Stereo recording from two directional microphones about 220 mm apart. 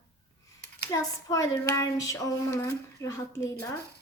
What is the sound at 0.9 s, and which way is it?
Speech, 15° left (ahead or behind).